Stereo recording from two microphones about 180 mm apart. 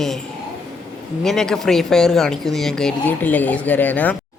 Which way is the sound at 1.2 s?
Centre (ahead or behind).